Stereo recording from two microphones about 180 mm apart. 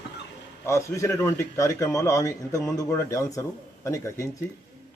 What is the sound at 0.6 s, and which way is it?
A man's voice, 15° left (ahead or behind).